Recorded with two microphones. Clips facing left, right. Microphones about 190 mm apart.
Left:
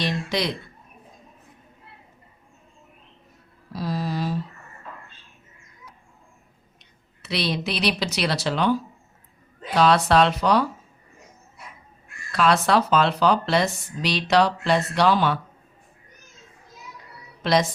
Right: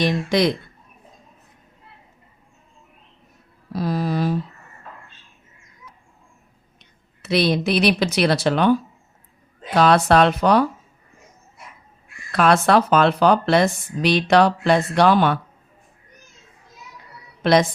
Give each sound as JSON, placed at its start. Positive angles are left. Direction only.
{"t": 0.0, "sound": "speech", "side_deg": -50}
{"t": 3.7, "sound": "a sound", "side_deg": -55}
{"t": 7.2, "sound": "speech", "side_deg": -50}
{"t": 9.7, "sound": "speech", "side_deg": -50}
{"t": 12.3, "sound": "speech", "side_deg": -55}
{"t": 17.4, "sound": "a woman's voice", "side_deg": -55}